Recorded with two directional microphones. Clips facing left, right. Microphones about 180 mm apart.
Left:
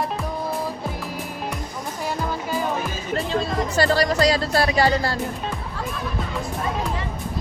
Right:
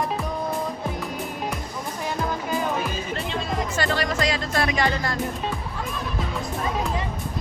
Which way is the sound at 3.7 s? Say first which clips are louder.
Left 7 dB; 35° left (ahead or behind).